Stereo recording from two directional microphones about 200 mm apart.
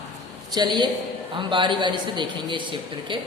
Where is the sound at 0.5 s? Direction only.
20° right (ahead or behind).